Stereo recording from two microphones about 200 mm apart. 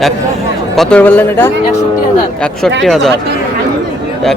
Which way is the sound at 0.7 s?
5° left (ahead or behind).